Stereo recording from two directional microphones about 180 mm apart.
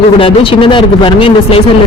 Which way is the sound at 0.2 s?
30° left (ahead or behind).